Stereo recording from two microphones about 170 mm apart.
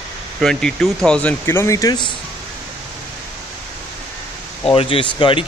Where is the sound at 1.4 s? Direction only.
15° left (ahead or behind).